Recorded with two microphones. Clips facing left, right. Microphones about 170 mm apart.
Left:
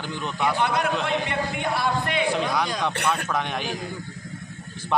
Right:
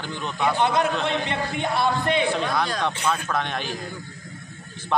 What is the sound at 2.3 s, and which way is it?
Speech, 10° left (ahead or behind).